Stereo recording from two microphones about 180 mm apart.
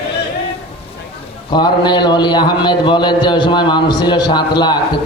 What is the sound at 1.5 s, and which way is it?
A man's voice, 25° left (ahead or behind).